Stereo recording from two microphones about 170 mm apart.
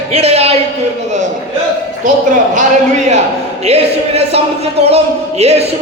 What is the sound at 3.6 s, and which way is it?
Speech, 40° right (ahead or behind).